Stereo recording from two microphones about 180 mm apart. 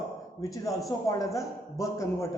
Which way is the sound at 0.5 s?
20° left (ahead or behind).